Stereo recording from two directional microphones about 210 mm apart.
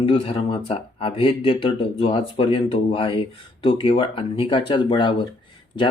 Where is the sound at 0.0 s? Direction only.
25° left (ahead or behind).